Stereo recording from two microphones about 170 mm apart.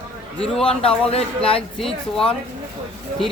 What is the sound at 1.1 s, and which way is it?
Speech, 35° left (ahead or behind).